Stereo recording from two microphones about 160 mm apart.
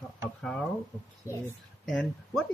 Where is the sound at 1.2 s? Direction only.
20° left (ahead or behind).